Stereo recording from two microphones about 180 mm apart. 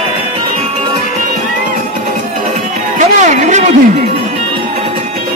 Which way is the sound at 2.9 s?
45° right (ahead or behind).